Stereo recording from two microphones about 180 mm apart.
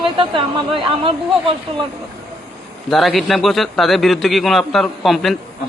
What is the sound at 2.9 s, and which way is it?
A man's voice, centre (ahead or behind).